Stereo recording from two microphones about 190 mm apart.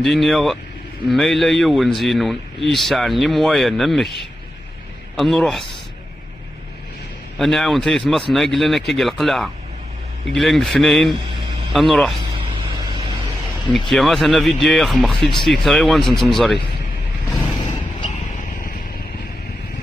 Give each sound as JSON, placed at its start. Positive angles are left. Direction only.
{"t": 0.0, "sound": "speech", "side_deg": 0}
{"t": 5.1, "sound": "speech", "side_deg": 0}
{"t": 7.3, "sound": "speech", "side_deg": 0}
{"t": 12.4, "sound": "vehicle", "side_deg": -25}
{"t": 13.7, "sound": "speech", "side_deg": 0}